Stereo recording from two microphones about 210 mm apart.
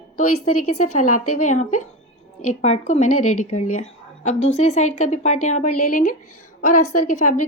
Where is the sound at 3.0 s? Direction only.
90° left.